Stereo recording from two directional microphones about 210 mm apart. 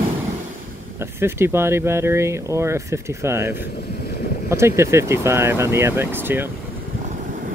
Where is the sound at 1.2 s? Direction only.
10° right (ahead or behind).